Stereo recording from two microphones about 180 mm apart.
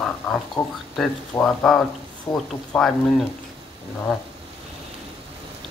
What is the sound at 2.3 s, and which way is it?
Speech, 15° left (ahead or behind).